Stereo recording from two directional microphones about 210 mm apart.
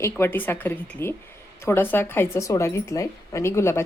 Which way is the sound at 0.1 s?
10° left (ahead or behind).